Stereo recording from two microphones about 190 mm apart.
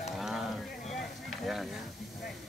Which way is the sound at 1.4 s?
Centre (ahead or behind).